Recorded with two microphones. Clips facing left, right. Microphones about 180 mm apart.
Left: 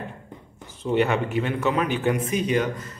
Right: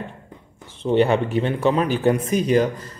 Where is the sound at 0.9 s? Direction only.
30° right (ahead or behind).